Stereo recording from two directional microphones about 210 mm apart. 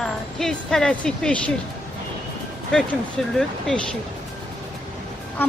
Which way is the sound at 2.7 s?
Centre (ahead or behind).